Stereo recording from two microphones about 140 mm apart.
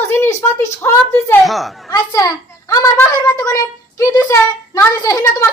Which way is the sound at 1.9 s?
25° left (ahead or behind).